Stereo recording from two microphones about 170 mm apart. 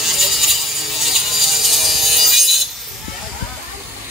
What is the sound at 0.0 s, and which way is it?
Music, centre (ahead or behind).